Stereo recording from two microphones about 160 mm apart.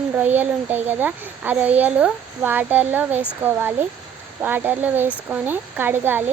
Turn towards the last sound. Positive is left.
turn(degrees=-10)  # may be behind; listen again after turning